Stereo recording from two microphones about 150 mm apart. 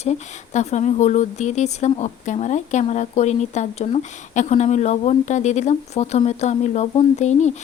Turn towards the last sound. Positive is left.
turn(degrees=50)  # may be behind; listen again after turning